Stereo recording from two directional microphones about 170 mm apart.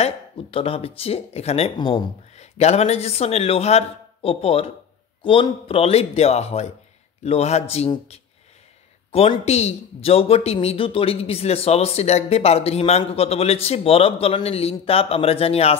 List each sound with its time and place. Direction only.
0.0 s speech: 35° left (ahead or behind)
2.3 s speech: 40° left (ahead or behind)